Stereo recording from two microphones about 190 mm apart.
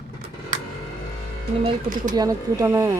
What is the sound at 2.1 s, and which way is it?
Speech, 20° right (ahead or behind).